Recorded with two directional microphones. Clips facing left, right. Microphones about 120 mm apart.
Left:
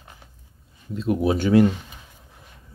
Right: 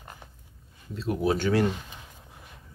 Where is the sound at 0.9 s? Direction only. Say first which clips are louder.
Left 4 dB; 15° left (ahead or behind).